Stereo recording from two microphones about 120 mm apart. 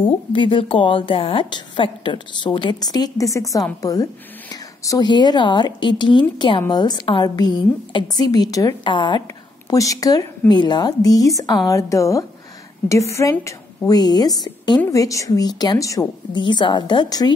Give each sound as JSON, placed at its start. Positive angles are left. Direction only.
{"t": 0.0, "sound": "a woman's voice", "side_deg": 45}
{"t": 8.8, "sound": "a woman's voice", "side_deg": 40}
{"t": 9.7, "sound": "a woman's voice", "side_deg": 30}
{"t": 16.3, "sound": "a woman's voice", "side_deg": 40}